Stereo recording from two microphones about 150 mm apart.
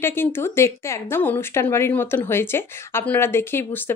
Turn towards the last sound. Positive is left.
turn(degrees=15)  # may be behind; listen again after turning